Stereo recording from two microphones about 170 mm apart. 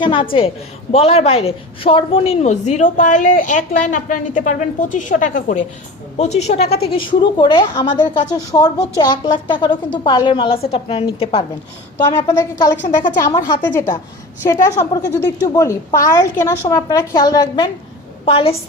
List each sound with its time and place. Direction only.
0.0 s a woman's voice: 30° left (ahead or behind)
12.9 s a woman's voice: 50° left (ahead or behind)
13.6 s a woman's voice: 10° left (ahead or behind); by 18.5 s 30° left (ahead or behind)